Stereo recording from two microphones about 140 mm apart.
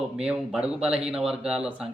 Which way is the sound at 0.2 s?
5° right (ahead or behind).